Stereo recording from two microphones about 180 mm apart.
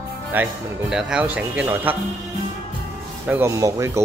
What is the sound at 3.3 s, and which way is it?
Speech, 15° right (ahead or behind).